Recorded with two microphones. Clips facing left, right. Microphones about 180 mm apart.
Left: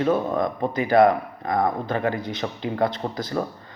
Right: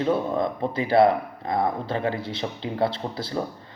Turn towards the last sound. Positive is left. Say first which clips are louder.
# left 2 dB
turn(degrees=-30)  # may be behind; listen again after turning